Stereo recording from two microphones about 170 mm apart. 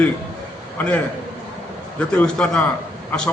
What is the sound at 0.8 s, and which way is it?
A man's voice, 10° left (ahead or behind).